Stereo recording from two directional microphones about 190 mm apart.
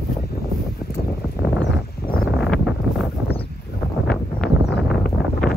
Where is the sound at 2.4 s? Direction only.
Centre (ahead or behind).